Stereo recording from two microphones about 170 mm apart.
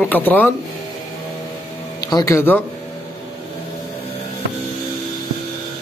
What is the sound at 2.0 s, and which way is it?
Speech, 20° left (ahead or behind).